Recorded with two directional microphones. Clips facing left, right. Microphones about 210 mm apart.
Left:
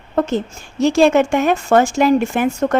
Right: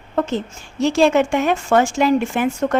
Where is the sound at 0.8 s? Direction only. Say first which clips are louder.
Left 2 dB; 45° left (ahead or behind).